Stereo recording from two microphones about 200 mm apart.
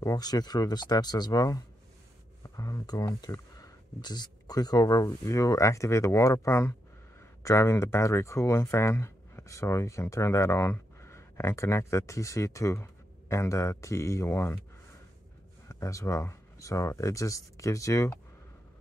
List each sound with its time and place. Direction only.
0.0 s speech: 20° left (ahead or behind)
15.7 s speech: 15° left (ahead or behind)